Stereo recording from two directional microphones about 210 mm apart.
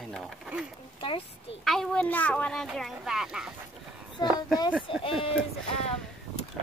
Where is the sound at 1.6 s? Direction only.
Centre (ahead or behind).